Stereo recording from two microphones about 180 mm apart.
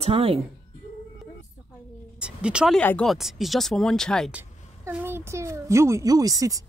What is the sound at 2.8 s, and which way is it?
Speech, 5° left (ahead or behind).